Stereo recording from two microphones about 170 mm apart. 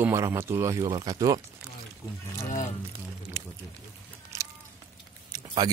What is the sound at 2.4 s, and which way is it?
Speech, 45° left (ahead or behind).